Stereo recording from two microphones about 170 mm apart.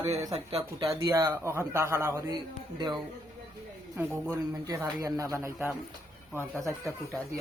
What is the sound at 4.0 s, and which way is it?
Speech, 10° right (ahead or behind).